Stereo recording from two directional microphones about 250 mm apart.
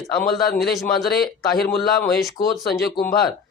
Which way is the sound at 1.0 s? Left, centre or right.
Left.